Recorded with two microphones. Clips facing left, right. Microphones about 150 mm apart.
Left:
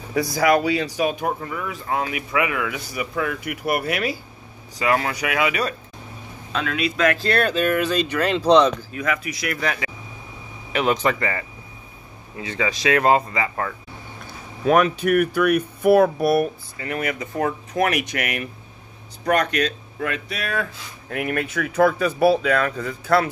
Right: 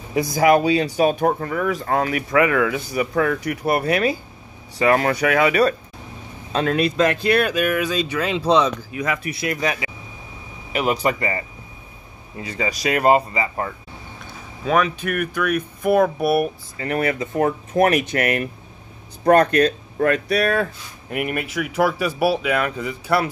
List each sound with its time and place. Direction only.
0.1 s speech: 20° right (ahead or behind)
1.4 s speech: 50° right (ahead or behind)
7.2 s speech: 15° right (ahead or behind)
8.9 s speech: 20° right (ahead or behind)
10.7 s speech: 5° right (ahead or behind)
13.0 s speech: 10° right (ahead or behind)
14.7 s speech: 10° left (ahead or behind)
16.7 s speech: 35° right (ahead or behind)
21.1 s speech: 15° right (ahead or behind)